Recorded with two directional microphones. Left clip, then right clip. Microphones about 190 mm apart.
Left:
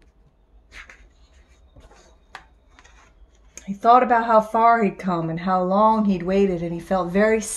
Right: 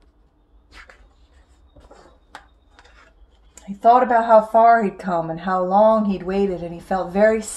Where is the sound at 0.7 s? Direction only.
25° left (ahead or behind).